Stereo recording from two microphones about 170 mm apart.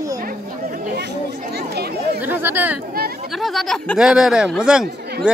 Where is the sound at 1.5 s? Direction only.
70° right (ahead or behind).